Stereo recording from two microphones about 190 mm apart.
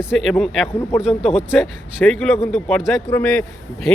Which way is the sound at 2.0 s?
5° left (ahead or behind).